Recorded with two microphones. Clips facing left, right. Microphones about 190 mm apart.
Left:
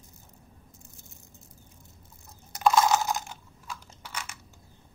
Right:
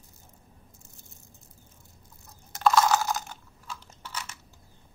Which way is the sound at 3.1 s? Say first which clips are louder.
Even; 10° left (ahead or behind).